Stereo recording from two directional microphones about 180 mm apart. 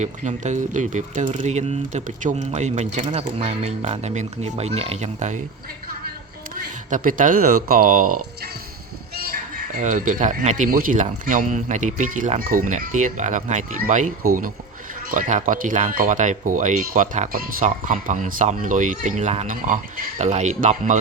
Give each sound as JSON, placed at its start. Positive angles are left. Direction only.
{"t": 0.0, "sound": "speech", "side_deg": -40}
{"t": 6.9, "sound": "speech", "side_deg": -50}
{"t": 9.7, "sound": "speech", "side_deg": -45}
{"t": 15.1, "sound": "speech", "side_deg": -45}